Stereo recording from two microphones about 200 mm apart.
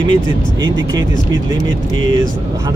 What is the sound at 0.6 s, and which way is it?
Speech, 65° right (ahead or behind).